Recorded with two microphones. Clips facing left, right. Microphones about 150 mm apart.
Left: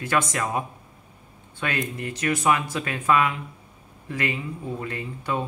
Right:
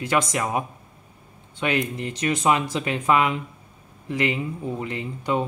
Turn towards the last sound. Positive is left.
turn(degrees=-20)  # may be behind; listen again after turning